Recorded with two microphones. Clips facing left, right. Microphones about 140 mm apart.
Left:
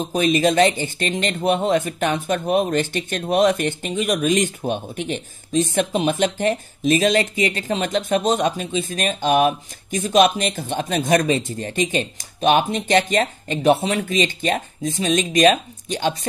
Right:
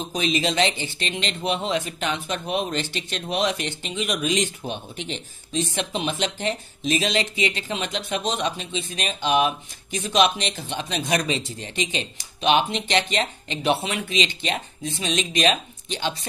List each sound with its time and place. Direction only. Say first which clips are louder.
0.1 s speech: left 7 dB; 50° left (ahead or behind)